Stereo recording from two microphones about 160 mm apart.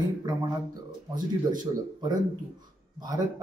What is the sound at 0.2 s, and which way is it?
Speech, 20° right (ahead or behind).